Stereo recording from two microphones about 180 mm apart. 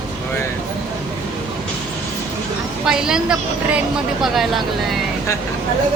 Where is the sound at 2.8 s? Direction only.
5° right (ahead or behind).